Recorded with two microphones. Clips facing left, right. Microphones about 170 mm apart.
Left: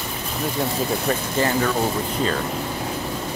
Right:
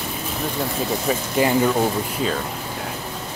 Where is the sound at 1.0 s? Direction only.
15° right (ahead or behind).